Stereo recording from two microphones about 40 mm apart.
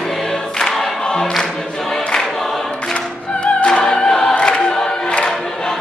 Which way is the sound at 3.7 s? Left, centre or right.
Centre.